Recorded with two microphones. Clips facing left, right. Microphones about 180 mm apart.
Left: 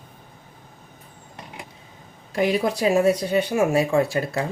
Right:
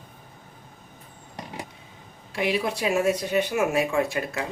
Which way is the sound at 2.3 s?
40° left (ahead or behind).